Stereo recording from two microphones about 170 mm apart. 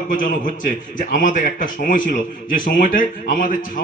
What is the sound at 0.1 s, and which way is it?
A man's voice, 50° left (ahead or behind).